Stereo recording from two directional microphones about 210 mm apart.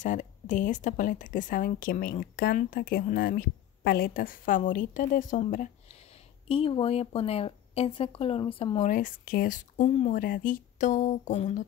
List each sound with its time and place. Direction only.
0.0 s a woman's voice: 40° left (ahead or behind)
6.5 s speech: 25° left (ahead or behind)
8.8 s a woman's voice: 40° left (ahead or behind)